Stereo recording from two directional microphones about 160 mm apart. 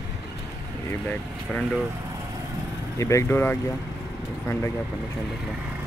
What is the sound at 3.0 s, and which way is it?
Speech, 20° left (ahead or behind).